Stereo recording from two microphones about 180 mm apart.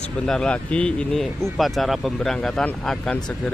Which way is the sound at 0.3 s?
5° left (ahead or behind).